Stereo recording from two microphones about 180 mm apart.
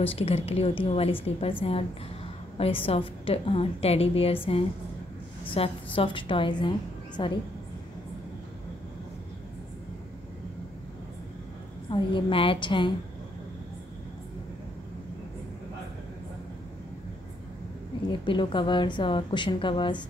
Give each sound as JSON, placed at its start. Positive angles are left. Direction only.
{"t": 0.0, "sound": "a woman's voice", "side_deg": 30}
{"t": 11.9, "sound": "a woman's voice", "side_deg": 30}
{"t": 18.2, "sound": "a woman's voice", "side_deg": 25}